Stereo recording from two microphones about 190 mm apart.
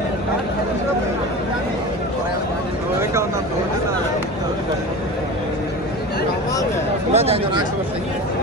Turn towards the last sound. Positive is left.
turn(degrees=-30)  # may be behind; listen again after turning